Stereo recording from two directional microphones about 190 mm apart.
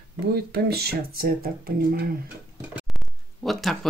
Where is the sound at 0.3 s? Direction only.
55° right (ahead or behind).